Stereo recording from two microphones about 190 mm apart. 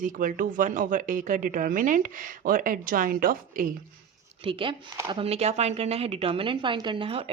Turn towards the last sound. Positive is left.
turn(degrees=-30)  # may be behind; listen again after turning